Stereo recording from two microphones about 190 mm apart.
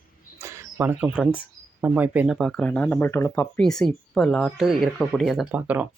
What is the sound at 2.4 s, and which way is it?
Speech, 5° left (ahead or behind).